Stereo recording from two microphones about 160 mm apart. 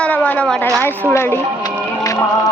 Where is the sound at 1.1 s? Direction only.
15° left (ahead or behind).